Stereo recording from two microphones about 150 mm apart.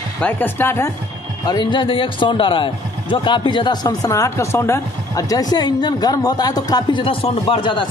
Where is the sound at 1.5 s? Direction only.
30° left (ahead or behind).